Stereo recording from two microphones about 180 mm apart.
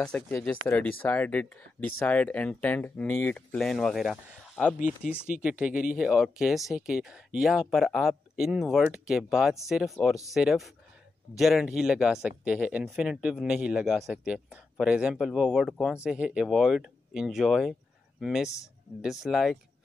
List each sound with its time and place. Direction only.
0.0 s speech: 5° left (ahead or behind)